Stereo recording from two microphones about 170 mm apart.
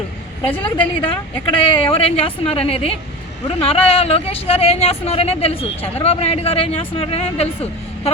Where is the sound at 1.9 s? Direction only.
35° left (ahead or behind).